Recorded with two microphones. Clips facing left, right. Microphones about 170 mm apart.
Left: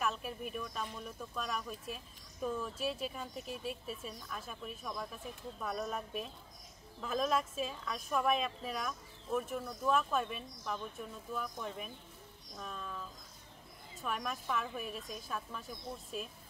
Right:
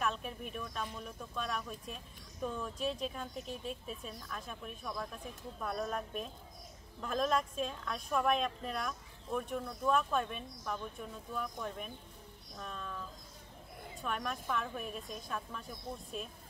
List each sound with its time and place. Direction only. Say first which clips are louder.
0.0 s speech: even; 5° left (ahead or behind)
14.0 s speech: even; centre (ahead or behind)